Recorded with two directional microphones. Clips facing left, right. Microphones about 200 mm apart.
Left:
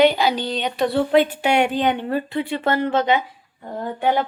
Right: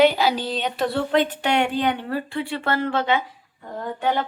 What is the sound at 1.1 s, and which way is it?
Speech, 10° left (ahead or behind).